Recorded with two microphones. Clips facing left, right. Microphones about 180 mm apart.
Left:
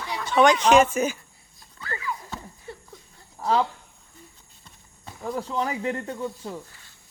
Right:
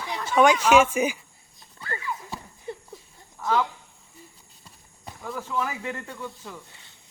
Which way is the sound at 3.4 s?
35° left (ahead or behind).